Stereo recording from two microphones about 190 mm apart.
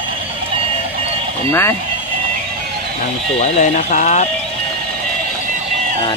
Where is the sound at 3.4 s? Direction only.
40° left (ahead or behind).